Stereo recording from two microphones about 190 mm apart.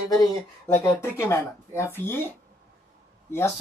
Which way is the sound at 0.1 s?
15° left (ahead or behind).